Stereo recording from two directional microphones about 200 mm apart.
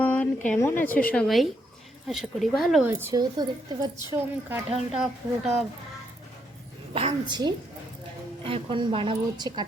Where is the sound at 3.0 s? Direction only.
15° right (ahead or behind).